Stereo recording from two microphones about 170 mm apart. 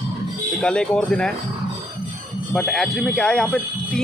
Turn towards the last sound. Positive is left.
turn(degrees=0)  # may be behind; listen again after turning